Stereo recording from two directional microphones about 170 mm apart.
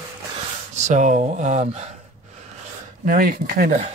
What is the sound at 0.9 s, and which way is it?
Speech, 45° right (ahead or behind).